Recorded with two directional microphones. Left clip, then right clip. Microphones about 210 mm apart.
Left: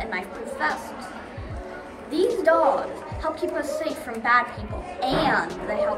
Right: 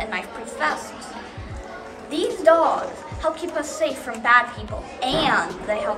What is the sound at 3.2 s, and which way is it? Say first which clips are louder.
A woman's voice: right 2 dB; 15° right (ahead or behind).